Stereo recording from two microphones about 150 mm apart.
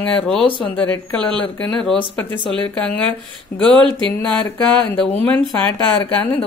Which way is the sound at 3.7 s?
35° right (ahead or behind).